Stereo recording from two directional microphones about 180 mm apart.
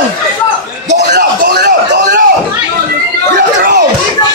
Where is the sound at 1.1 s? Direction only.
50° right (ahead or behind).